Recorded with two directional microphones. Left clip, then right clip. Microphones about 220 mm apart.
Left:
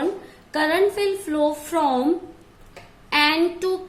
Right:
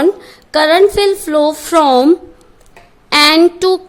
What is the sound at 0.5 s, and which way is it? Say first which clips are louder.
Speech: right 11 dB; 45° right (ahead or behind).